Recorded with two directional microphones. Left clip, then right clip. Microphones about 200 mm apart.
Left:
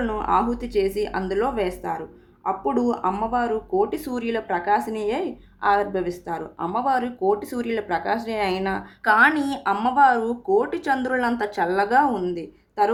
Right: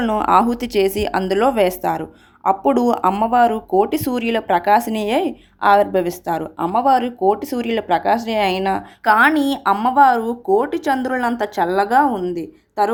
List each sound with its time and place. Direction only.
0.0 s speech: 45° right (ahead or behind)
9.0 s speech: 25° right (ahead or behind)